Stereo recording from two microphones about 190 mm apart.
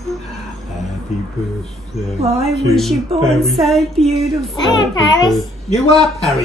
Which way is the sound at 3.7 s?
Centre (ahead or behind).